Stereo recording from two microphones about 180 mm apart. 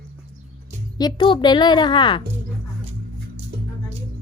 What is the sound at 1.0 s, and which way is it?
A woman's voice, 25° left (ahead or behind).